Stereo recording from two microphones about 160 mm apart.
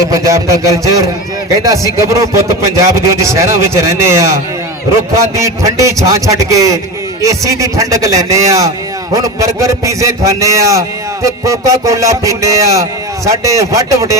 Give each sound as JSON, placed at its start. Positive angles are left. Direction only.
{"t": 0.1, "sound": "a man's voice", "side_deg": -20}